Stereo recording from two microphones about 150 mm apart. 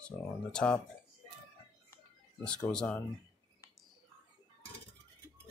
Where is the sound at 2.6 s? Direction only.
5° left (ahead or behind).